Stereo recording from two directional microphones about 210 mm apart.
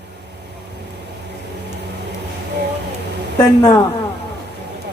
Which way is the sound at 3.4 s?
20° left (ahead or behind).